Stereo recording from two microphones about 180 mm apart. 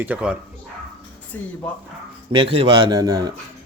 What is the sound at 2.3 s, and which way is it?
Speech, 30° right (ahead or behind).